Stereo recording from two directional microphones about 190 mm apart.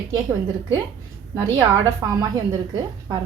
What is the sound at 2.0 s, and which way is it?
Speech, 20° right (ahead or behind).